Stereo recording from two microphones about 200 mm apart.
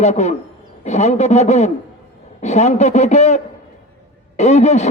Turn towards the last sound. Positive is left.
turn(degrees=35)  # may be behind; listen again after turning